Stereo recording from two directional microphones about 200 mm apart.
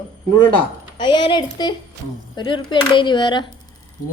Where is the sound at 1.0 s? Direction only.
25° left (ahead or behind).